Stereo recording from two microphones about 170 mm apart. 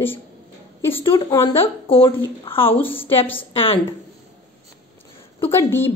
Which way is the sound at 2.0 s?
35° left (ahead or behind).